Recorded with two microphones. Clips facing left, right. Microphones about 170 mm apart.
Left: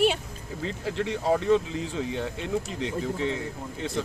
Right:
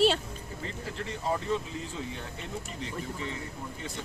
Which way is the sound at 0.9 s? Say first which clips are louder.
Left 7 dB; 85° left.